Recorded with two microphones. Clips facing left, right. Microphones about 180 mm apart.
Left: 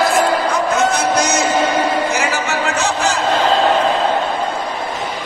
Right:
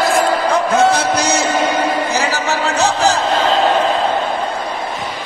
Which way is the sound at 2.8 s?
35° right (ahead or behind).